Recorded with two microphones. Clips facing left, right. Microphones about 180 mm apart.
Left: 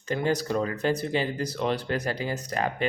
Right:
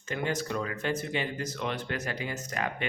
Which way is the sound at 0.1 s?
35° left (ahead or behind).